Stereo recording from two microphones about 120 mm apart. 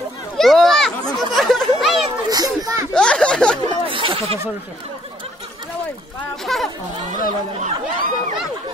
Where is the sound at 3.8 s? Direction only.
45° right (ahead or behind).